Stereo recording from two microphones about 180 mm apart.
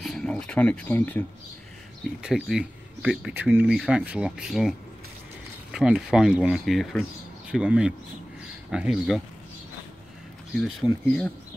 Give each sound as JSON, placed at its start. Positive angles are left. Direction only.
{"t": 0.0, "sound": "speech", "side_deg": 5}
{"t": 2.2, "sound": "speech", "side_deg": -5}
{"t": 10.5, "sound": "speech", "side_deg": 0}